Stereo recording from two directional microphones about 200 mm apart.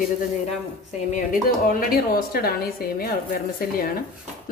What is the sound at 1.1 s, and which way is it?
A woman's voice, 45° left (ahead or behind).